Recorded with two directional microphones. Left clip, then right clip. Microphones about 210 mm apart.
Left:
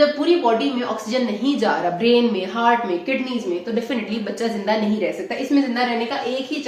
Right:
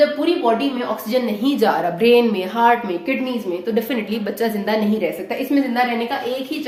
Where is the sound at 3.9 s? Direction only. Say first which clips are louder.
Right 2 dB; 50° right (ahead or behind).